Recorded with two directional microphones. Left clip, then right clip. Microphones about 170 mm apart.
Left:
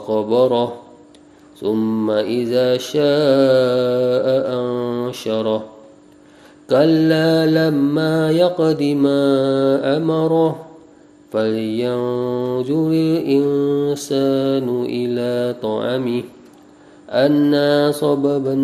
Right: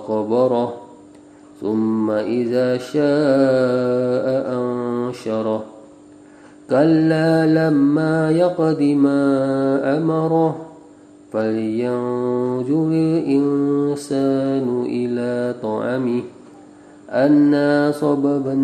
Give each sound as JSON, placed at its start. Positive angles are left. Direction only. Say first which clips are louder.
{"t": 0.1, "sound": "mantra", "louder": "left 2 dB", "side_deg": 25}
{"t": 6.7, "sound": "mantra", "louder": "left 1 dB", "side_deg": 25}